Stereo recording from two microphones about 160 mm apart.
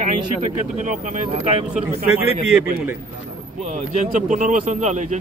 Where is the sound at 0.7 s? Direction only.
50° right (ahead or behind).